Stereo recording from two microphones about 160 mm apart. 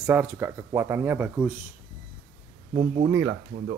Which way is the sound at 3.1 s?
15° right (ahead or behind).